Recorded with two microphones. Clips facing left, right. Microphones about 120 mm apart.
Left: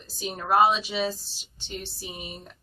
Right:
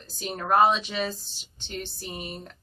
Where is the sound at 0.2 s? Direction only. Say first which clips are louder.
Even; 5° left (ahead or behind).